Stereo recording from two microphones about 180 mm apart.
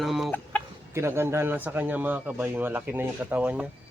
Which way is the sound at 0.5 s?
10° left (ahead or behind).